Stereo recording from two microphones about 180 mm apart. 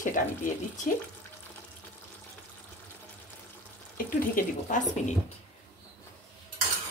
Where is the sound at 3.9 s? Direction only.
50° left (ahead or behind).